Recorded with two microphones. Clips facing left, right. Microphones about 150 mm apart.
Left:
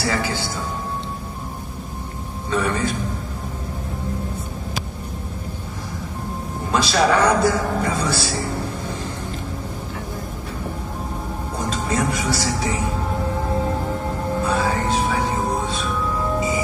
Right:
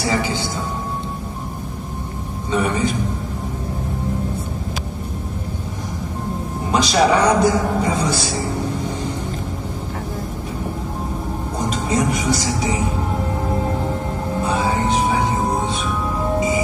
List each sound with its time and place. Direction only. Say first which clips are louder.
0.0 s a man's voice: right 2 dB; 20° right (ahead or behind)
2.5 s a man's voice: right 2 dB; 15° right (ahead or behind)
6.7 s a man's voice: right 2 dB; 15° right (ahead or behind)
11.7 s speech: right 2 dB; 20° right (ahead or behind)
14.5 s music: right 3 dB; 20° right (ahead or behind)